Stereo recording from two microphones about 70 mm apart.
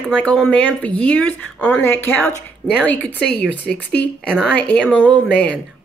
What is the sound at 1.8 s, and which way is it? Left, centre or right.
Speech, left.